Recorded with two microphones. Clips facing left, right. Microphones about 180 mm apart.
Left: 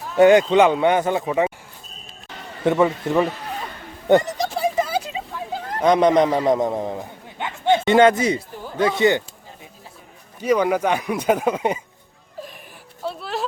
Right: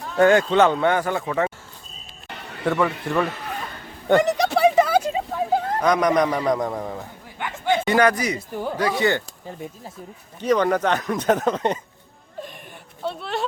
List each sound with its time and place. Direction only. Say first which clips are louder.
0.2 s speech: left 3 dB; 15° left (ahead or behind)
2.6 s a man's voice: left 4 dB; 20° left (ahead or behind)
4.2 s a sound: right 6 dB; 70° right (ahead or behind); by 5.6 s 45° right (ahead or behind)
5.8 s a man's voice: left 5 dB; 25° left (ahead or behind)
10.4 s speech: left 1 dB; 10° left (ahead or behind)
13.0 s a sound: even; centre (ahead or behind)